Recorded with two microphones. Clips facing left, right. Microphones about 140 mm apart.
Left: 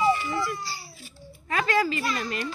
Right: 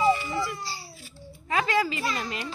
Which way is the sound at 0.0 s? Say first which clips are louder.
Even; 25° right (ahead or behind).